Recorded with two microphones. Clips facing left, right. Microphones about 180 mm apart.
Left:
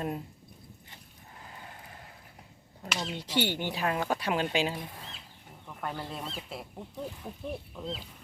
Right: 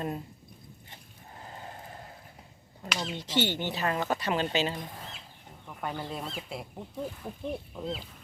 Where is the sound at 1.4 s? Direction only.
35° right (ahead or behind).